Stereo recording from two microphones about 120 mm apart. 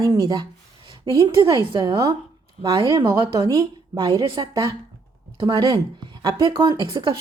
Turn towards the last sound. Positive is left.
turn(degrees=-40)  # may be behind; listen again after turning